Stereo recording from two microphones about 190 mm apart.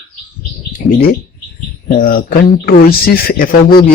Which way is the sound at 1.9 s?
50° left (ahead or behind).